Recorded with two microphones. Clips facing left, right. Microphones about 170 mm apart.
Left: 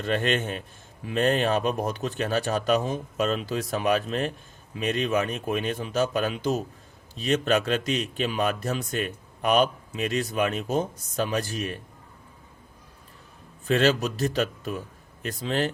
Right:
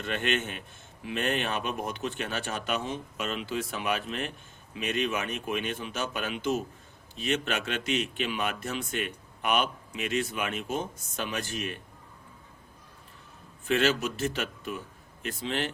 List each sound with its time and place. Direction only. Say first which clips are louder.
0.0 s speech: left 5 dB; 40° left (ahead or behind)
13.7 s speech: left 4 dB; 40° left (ahead or behind)